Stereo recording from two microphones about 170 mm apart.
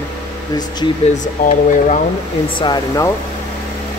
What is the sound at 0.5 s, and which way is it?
Speech, 25° left (ahead or behind).